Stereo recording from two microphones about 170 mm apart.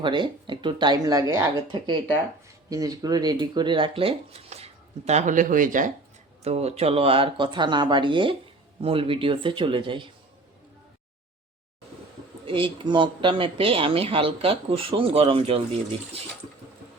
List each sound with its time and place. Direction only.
0.0 s speech: 30° right (ahead or behind)
2.6 s speech: 20° right (ahead or behind); by 5.9 s 50° right (ahead or behind)
6.4 s speech: 40° right (ahead or behind)
12.5 s speech: 30° right (ahead or behind)